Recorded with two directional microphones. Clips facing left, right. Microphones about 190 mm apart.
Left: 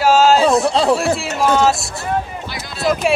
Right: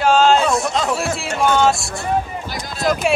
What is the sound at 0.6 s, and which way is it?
Speech, 30° left (ahead or behind).